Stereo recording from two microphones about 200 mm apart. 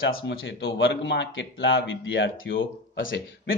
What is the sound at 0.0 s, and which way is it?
A man's voice, 60° left (ahead or behind).